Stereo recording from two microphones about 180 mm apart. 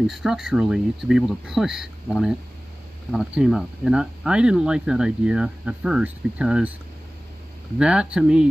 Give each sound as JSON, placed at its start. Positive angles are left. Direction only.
{"t": 0.0, "sound": "speech", "side_deg": 0}
{"t": 7.8, "sound": "speech", "side_deg": -5}